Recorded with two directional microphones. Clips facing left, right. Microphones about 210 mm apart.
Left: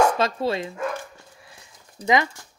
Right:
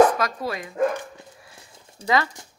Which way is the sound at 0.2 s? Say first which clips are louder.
Left 4 dB; 25° left (ahead or behind).